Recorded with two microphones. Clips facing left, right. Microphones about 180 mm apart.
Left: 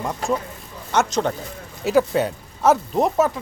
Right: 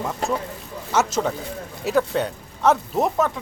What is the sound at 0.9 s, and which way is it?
Speech, 5° right (ahead or behind).